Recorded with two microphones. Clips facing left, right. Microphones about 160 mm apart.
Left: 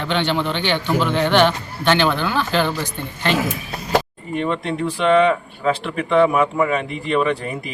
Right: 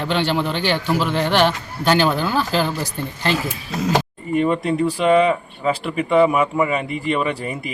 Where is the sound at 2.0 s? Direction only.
5° right (ahead or behind).